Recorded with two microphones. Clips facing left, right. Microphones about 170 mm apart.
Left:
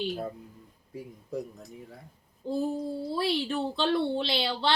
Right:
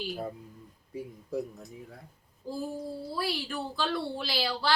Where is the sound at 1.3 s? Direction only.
5° right (ahead or behind).